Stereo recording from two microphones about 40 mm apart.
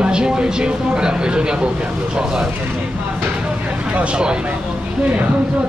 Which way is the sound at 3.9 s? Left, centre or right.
Right.